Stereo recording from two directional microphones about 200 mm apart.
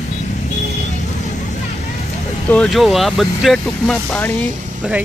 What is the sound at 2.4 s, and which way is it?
Speech, 5° left (ahead or behind).